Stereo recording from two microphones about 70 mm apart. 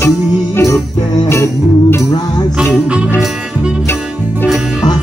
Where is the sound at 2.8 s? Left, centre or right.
Centre.